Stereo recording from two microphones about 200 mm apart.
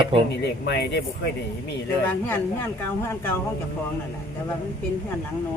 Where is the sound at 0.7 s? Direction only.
55° left (ahead or behind).